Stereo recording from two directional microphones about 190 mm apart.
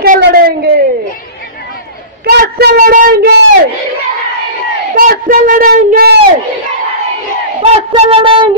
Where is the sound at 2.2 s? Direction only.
55° right (ahead or behind).